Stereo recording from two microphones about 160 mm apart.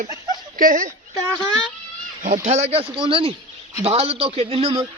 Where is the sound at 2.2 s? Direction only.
55° right (ahead or behind); by 4.8 s 35° right (ahead or behind).